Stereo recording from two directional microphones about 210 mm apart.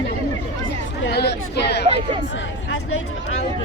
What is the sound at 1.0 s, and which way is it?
Speech, 50° left (ahead or behind).